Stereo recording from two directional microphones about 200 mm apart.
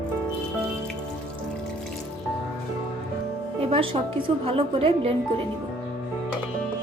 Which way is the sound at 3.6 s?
30° right (ahead or behind).